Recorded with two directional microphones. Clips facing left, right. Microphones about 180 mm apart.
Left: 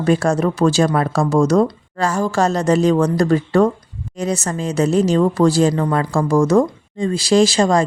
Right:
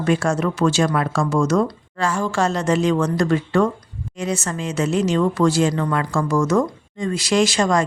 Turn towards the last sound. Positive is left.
turn(degrees=30)  # may be behind; listen again after turning